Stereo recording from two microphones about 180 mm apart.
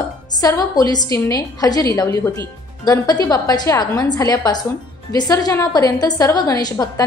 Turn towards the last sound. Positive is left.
turn(degrees=20)  # may be behind; listen again after turning